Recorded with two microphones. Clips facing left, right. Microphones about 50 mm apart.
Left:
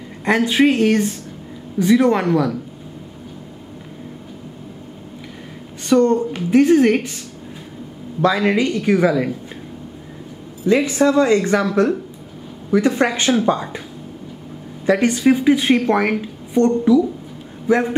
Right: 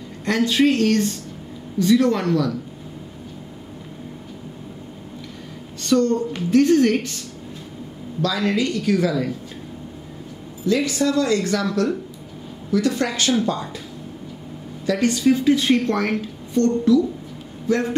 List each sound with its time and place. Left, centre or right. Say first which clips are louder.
0.2 s a woman's voice: left 3 dB; left
5.8 s a woman's voice: left 4 dB; centre
10.9 s a woman's voice: left 5 dB; left
14.9 s a woman's voice: left 3 dB; left